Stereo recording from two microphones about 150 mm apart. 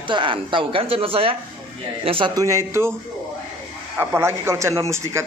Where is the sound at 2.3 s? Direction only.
20° right (ahead or behind).